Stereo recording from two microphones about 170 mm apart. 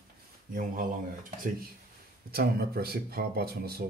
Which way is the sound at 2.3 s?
65° right (ahead or behind).